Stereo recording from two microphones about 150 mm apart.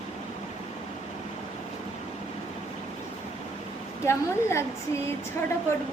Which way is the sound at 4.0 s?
20° left (ahead or behind).